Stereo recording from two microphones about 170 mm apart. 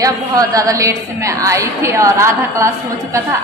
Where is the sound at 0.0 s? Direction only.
20° right (ahead or behind).